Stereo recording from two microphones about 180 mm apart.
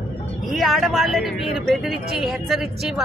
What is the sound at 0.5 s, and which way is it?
Speech, centre (ahead or behind).